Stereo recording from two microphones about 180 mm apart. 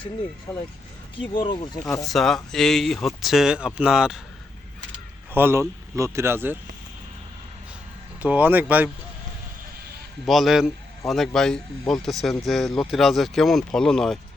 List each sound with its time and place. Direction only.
0.5 s speech: 15° left (ahead or behind)
1.5 s speech: 25° left (ahead or behind)
2.0 s speech: centre (ahead or behind)
5.3 s speech: 10° right (ahead or behind)
8.2 s speech: 10° right (ahead or behind)
10.2 s a man's voice: centre (ahead or behind)